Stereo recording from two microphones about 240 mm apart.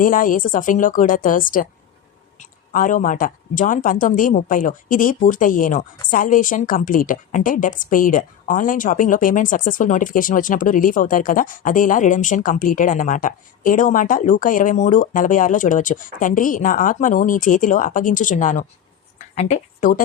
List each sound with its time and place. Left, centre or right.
0.0 s a woman's voice: left